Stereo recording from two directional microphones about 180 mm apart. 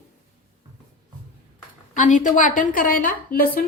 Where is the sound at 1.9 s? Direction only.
45° left (ahead or behind).